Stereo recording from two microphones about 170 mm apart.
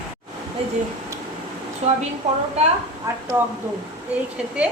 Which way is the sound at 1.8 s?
40° right (ahead or behind).